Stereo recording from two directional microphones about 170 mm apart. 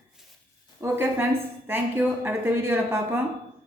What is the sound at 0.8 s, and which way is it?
A woman's voice, 10° right (ahead or behind).